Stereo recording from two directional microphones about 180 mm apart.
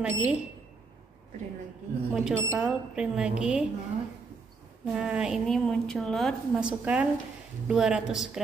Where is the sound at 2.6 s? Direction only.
5° right (ahead or behind).